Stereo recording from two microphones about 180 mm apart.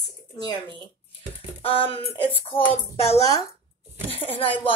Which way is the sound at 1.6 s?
30° left (ahead or behind).